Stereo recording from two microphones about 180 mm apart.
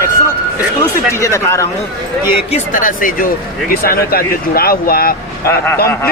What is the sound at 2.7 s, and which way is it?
A man's voice, 50° left (ahead or behind).